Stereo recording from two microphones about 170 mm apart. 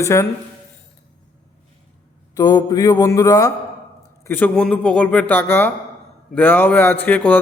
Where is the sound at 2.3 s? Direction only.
25° left (ahead or behind).